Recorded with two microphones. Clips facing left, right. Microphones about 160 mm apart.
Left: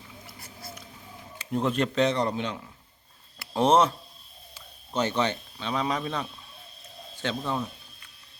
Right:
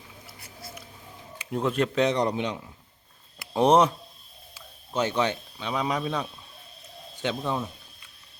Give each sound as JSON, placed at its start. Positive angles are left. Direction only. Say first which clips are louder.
{"t": 1.5, "sound": "a man's voice", "louder": "even", "side_deg": -5}